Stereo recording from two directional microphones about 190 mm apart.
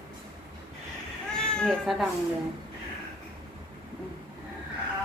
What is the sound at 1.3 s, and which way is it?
Cat, 5° left (ahead or behind).